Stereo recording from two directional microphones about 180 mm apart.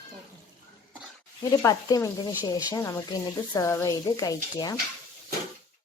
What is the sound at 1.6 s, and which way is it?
Speech, 20° left (ahead or behind).